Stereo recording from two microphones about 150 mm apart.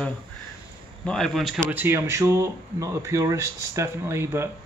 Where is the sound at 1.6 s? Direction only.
15° right (ahead or behind).